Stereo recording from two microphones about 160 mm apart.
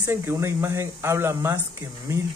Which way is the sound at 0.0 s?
15° right (ahead or behind).